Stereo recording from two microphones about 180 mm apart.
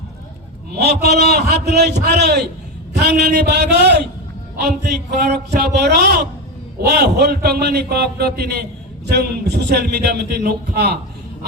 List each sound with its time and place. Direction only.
0.8 s a man's voice: 65° right (ahead or behind)